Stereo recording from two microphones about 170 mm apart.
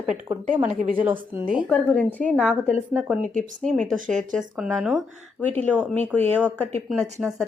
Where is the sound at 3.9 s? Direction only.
50° right (ahead or behind).